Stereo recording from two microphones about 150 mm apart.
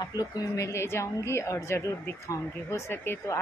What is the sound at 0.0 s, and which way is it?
A woman's voice, 25° left (ahead or behind).